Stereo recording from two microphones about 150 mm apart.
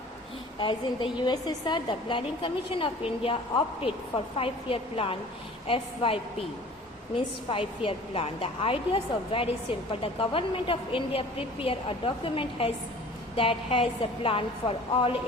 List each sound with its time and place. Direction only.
0.6 s speech: 35° left (ahead or behind)
4.4 s speech: 40° left (ahead or behind)
7.5 s speech: 35° left (ahead or behind)